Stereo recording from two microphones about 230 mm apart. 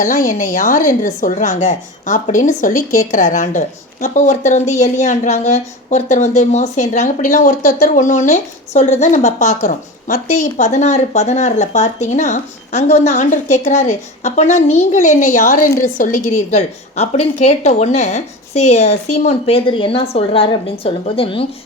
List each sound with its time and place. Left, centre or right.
0.0 s a woman's voice: left